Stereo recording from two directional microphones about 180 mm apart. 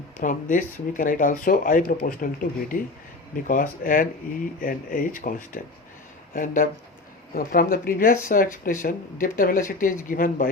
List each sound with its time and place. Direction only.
0.2 s speech: 45° left (ahead or behind)
3.4 s speech: 50° left (ahead or behind)